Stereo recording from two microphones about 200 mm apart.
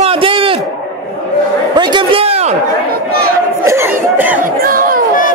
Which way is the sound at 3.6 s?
15° right (ahead or behind).